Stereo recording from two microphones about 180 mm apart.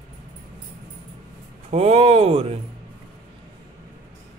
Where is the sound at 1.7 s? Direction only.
35° right (ahead or behind).